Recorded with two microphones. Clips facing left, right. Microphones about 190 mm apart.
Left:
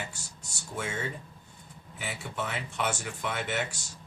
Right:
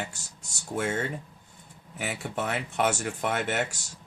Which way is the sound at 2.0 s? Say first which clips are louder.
Right 4 dB; 55° right (ahead or behind).